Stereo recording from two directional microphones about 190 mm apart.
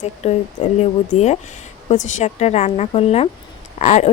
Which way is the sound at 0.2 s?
35° left (ahead or behind).